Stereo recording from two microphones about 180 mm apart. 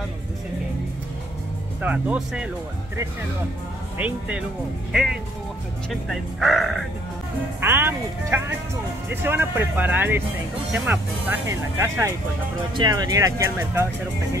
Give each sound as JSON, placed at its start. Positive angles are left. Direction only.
{"t": 1.8, "sound": "speech", "side_deg": -10}
{"t": 4.0, "sound": "speech", "side_deg": -10}
{"t": 7.6, "sound": "speech", "side_deg": -15}